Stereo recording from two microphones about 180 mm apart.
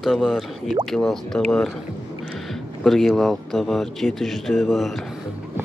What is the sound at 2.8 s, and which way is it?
Speech, centre (ahead or behind).